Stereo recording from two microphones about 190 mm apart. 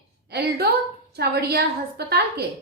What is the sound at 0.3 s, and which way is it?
A woman's voice, 60° right (ahead or behind).